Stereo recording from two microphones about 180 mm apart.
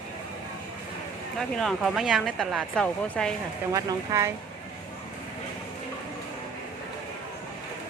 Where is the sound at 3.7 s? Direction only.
20° right (ahead or behind).